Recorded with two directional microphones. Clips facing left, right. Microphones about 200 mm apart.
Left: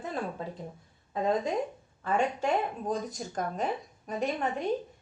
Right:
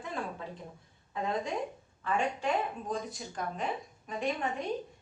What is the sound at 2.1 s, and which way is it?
A woman's voice, 40° left (ahead or behind).